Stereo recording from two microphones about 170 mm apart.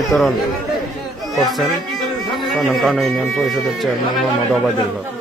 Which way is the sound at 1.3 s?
Centre (ahead or behind).